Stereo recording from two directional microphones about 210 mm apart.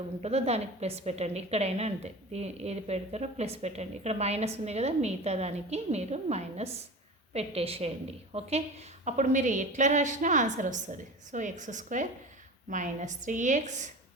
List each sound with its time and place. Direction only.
0.2 s a woman's voice: 30° right (ahead or behind)